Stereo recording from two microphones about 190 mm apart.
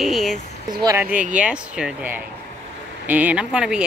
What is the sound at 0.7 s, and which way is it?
Speech, 20° right (ahead or behind).